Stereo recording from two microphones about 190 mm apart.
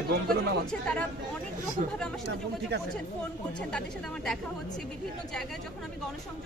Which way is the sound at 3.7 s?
5° left (ahead or behind).